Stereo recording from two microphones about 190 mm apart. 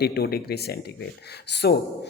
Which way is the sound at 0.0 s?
55° left (ahead or behind).